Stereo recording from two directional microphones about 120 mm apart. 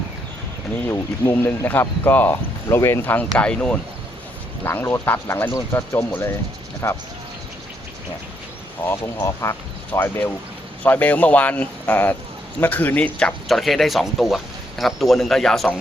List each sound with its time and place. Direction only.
0.9 s speech: 25° left (ahead or behind)
4.6 s speech: 20° left (ahead or behind)
5.5 s speech: 25° left (ahead or behind)
8.9 s speech: 20° left (ahead or behind)
13.1 s speech: 5° left (ahead or behind)